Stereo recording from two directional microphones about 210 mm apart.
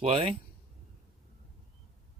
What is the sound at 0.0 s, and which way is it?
Speech, 30° right (ahead or behind).